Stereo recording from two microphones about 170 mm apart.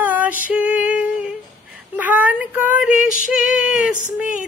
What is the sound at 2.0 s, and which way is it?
Child singing, 10° right (ahead or behind).